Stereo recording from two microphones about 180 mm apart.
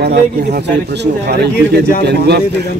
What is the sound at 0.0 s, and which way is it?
A man's voice, 70° right (ahead or behind).